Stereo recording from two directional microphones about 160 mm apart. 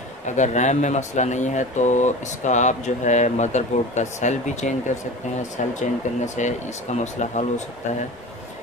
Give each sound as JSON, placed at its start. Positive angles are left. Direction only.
{"t": 0.4, "sound": "speech", "side_deg": 45}